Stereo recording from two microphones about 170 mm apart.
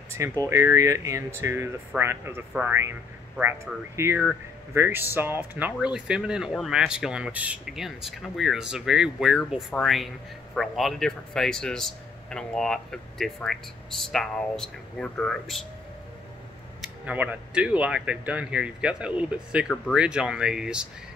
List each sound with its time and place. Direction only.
0.4 s speech: 15° right (ahead or behind); by 15.6 s 5° left (ahead or behind)
16.8 s speech: 10° right (ahead or behind)